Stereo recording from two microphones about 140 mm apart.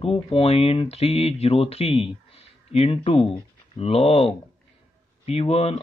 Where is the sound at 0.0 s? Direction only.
45° left (ahead or behind).